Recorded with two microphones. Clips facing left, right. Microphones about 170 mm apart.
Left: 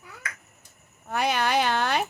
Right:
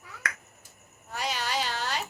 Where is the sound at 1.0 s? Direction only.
60° left (ahead or behind).